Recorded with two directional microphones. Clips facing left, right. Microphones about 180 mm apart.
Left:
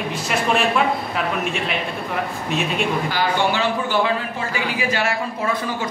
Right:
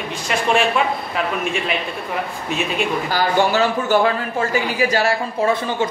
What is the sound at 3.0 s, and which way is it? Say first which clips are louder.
Speech: right 3 dB; 40° right (ahead or behind).